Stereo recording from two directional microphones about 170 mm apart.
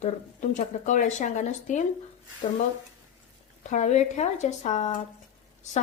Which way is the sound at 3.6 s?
45° left (ahead or behind).